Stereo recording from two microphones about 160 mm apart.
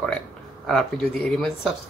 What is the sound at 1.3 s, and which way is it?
Speech, centre (ahead or behind).